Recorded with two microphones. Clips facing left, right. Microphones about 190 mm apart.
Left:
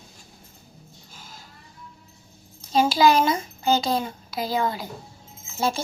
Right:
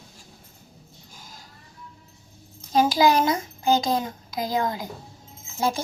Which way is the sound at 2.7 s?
15° right (ahead or behind).